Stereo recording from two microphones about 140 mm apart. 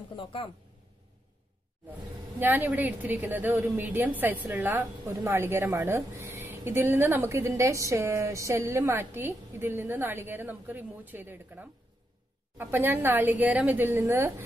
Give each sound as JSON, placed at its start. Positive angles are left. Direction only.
{"t": 0.1, "sound": "speech", "side_deg": 40}
{"t": 1.9, "sound": "a woman's voice", "side_deg": -15}